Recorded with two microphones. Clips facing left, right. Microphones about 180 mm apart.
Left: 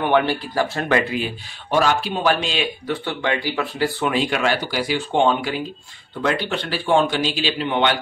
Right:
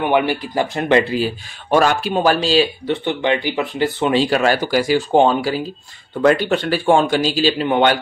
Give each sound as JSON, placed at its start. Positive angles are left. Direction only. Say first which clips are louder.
{"t": 0.0, "sound": "speech", "louder": "right 2 dB", "side_deg": -15}
{"t": 1.7, "sound": "speech", "louder": "right 4 dB", "side_deg": -50}
{"t": 3.1, "sound": "a man's voice", "louder": "right 5 dB", "side_deg": -20}